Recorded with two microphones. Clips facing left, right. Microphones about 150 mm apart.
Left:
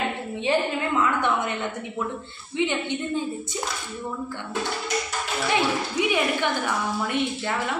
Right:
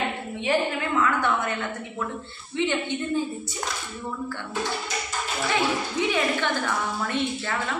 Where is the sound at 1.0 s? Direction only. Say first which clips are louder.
Left 1 dB; 20° left (ahead or behind).